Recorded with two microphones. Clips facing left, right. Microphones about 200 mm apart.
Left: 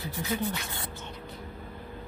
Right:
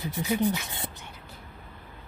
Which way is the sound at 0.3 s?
15° right (ahead or behind).